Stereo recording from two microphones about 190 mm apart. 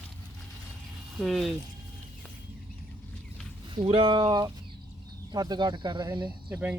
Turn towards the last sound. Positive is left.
turn(degrees=-10)  # may be behind; listen again after turning